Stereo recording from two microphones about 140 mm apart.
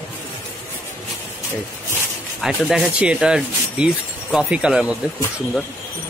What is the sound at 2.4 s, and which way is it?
Speech, centre (ahead or behind).